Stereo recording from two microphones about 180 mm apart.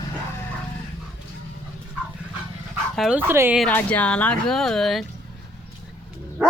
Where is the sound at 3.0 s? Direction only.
5° right (ahead or behind).